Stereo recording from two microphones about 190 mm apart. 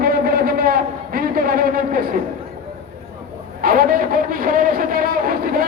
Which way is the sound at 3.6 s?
50° right (ahead or behind).